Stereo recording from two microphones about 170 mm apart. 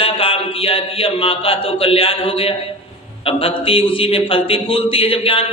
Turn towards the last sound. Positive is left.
turn(degrees=35)  # may be behind; listen again after turning